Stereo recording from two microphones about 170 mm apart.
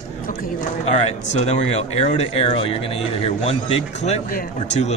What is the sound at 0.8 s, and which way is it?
Speech, 40° left (ahead or behind).